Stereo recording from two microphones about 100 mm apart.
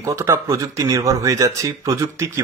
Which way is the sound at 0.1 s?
30° right (ahead or behind).